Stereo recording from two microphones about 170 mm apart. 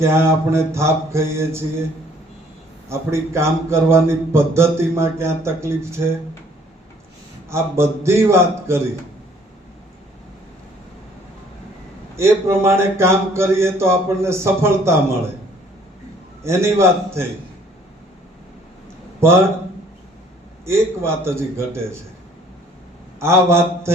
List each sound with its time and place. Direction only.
0.0 s speech: 15° right (ahead or behind)
3.1 s speech: 15° right (ahead or behind)
7.5 s speech: 15° right (ahead or behind)
12.1 s speech: 15° right (ahead or behind)
16.4 s speech: 15° right (ahead or behind)
19.2 s speech: 15° right (ahead or behind)
20.7 s speech: 15° right (ahead or behind)
23.2 s speech: 15° right (ahead or behind)